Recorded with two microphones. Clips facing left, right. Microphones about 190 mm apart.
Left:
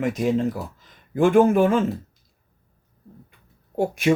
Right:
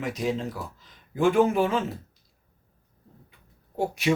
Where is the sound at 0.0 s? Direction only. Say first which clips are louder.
Left 7 dB; 50° left (ahead or behind).